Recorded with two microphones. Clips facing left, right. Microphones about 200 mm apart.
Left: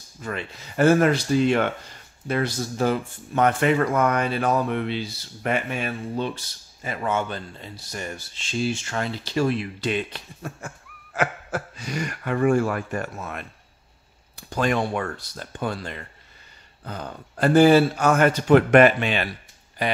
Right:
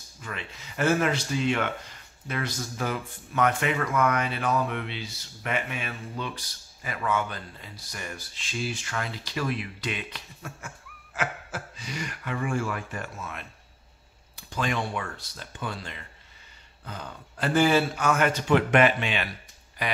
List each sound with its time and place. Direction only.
0.2 s speech: 40° left (ahead or behind)
11.1 s a sound: 65° left (ahead or behind)
12.1 s speech: 45° left (ahead or behind)
14.5 s speech: 45° left (ahead or behind)
19.8 s speech: 30° left (ahead or behind)